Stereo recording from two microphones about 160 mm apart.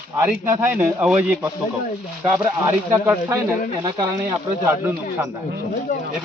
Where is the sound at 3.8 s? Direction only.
25° right (ahead or behind).